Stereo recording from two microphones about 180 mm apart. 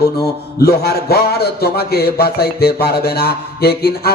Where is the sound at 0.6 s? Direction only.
60° left (ahead or behind).